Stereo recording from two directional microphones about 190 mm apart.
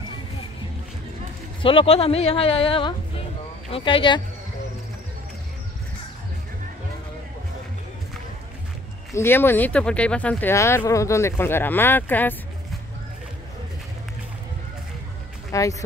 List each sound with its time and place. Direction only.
1.6 s speech: 30° left (ahead or behind)
9.1 s speech: 10° left (ahead or behind)
15.5 s speech: 15° left (ahead or behind)